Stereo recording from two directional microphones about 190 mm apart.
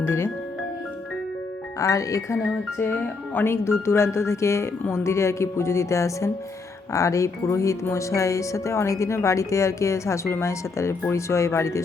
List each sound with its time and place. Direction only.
0.0 s music: 15° left (ahead or behind)
1.8 s speech: 15° left (ahead or behind)